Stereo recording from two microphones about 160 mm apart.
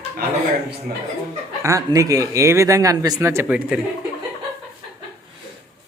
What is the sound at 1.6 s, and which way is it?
Speech, 20° right (ahead or behind).